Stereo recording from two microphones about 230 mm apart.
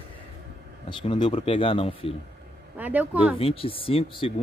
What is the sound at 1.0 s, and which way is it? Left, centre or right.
Speech, left.